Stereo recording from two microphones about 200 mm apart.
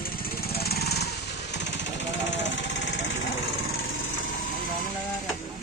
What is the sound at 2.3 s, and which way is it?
Vehicle, 65° left (ahead or behind).